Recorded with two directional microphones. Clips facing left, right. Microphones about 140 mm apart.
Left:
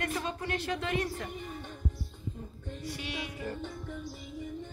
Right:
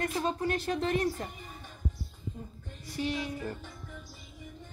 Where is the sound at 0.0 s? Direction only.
40° right (ahead or behind).